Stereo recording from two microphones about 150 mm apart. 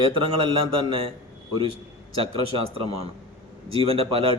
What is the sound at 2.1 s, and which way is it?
A man's voice, 40° right (ahead or behind).